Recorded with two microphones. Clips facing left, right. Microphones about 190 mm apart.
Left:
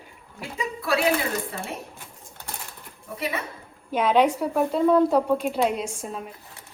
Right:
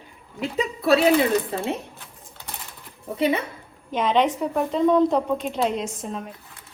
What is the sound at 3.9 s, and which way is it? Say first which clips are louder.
A woman's voice: left 1 dB; 10° left (ahead or behind).